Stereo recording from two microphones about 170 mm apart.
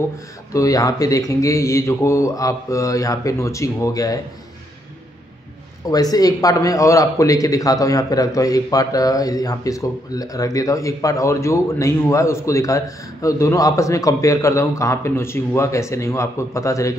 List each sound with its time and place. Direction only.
0.5 s a man's voice: 20° left (ahead or behind)
5.9 s a man's voice: 20° left (ahead or behind)